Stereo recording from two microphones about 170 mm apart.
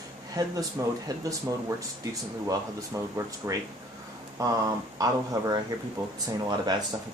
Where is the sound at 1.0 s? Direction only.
20° right (ahead or behind).